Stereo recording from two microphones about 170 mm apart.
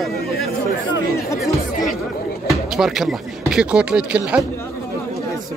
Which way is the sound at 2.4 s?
Centre (ahead or behind).